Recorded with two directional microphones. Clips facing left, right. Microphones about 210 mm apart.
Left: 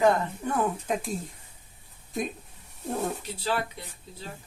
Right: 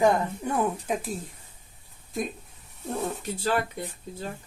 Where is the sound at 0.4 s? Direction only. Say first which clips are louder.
Left 1 dB; 15° right (ahead or behind).